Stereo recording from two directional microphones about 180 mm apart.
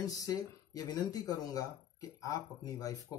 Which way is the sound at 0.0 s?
20° left (ahead or behind).